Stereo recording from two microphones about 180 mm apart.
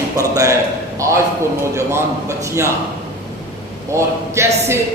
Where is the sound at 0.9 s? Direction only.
15° right (ahead or behind).